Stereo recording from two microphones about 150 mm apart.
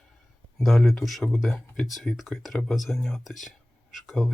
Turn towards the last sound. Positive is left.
turn(degrees=0)  # may be behind; listen again after turning